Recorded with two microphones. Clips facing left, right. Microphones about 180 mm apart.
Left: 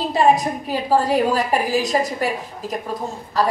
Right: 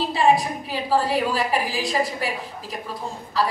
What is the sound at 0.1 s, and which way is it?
A woman's voice, 45° left (ahead or behind).